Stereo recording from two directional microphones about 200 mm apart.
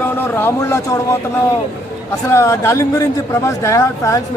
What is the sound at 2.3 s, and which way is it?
A man's voice, 15° left (ahead or behind).